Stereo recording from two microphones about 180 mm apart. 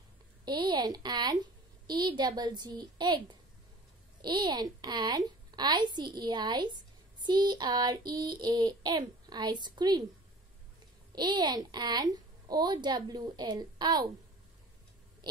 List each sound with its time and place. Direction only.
0.5 s a woman's voice: 25° right (ahead or behind)
11.1 s a child's voice: 25° right (ahead or behind)